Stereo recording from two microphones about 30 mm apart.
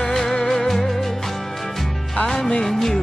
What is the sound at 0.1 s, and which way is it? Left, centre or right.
Music, centre.